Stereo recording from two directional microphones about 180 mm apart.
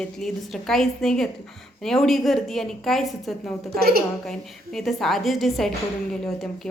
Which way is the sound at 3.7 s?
60° right (ahead or behind).